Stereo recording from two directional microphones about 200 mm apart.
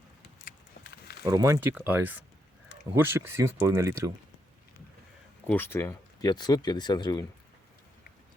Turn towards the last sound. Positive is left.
turn(degrees=20)  # may be behind; listen again after turning